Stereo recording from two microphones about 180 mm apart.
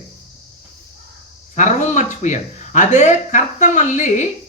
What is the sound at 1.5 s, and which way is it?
Speech, 40° left (ahead or behind).